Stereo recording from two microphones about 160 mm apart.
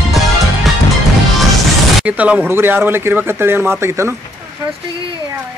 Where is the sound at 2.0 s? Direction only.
10° right (ahead or behind).